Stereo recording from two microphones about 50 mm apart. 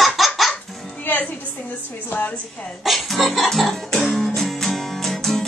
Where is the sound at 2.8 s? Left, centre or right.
Centre.